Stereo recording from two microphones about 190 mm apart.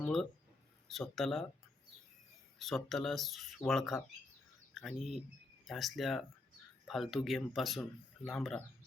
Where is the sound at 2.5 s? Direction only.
Centre (ahead or behind).